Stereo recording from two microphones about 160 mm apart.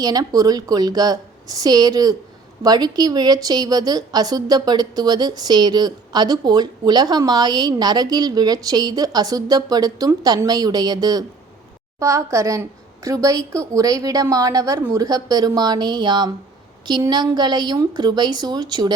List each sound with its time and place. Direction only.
0.0 s a woman's voice: 25° right (ahead or behind)